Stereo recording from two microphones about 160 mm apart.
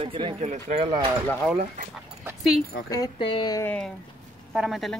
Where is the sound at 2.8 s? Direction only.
20° left (ahead or behind).